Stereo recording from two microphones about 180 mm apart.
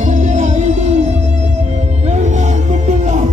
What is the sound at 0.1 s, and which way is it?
Music, 45° right (ahead or behind).